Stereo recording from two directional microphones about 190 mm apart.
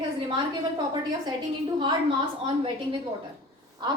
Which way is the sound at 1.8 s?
25° right (ahead or behind).